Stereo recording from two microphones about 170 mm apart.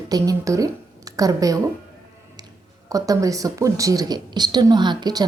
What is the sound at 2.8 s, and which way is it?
A woman's voice, 20° right (ahead or behind).